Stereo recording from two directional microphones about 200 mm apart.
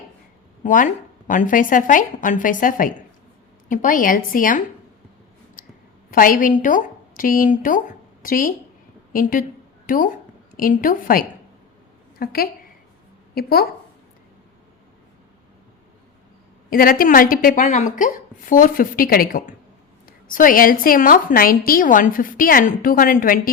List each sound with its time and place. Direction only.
0.6 s a woman's voice: 40° left (ahead or behind)
6.1 s a woman's voice: 45° left (ahead or behind)
16.6 s a woman's voice: 45° left (ahead or behind)